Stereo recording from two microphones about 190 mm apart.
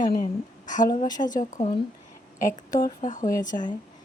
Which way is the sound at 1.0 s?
20° left (ahead or behind).